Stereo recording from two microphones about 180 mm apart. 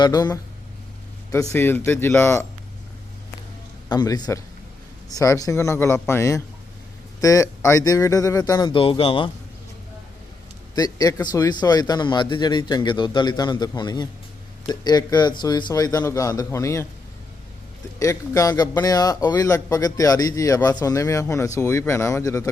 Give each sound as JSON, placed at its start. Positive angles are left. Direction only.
{"t": 0.0, "sound": "speech", "side_deg": 20}
{"t": 1.5, "sound": "a man's voice", "side_deg": 10}
{"t": 3.8, "sound": "a man's voice", "side_deg": 20}
{"t": 10.8, "sound": "speech", "side_deg": 20}
{"t": 18.0, "sound": "a man's voice", "side_deg": 15}